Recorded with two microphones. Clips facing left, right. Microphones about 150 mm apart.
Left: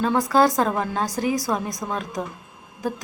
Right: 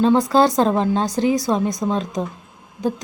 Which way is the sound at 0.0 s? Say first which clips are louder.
Right 4 dB; 25° right (ahead or behind).